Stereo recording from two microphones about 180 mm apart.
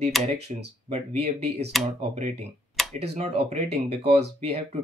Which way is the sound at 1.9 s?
50° right (ahead or behind).